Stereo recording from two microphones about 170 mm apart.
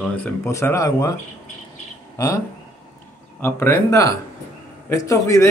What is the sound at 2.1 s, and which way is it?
Speech, 20° left (ahead or behind).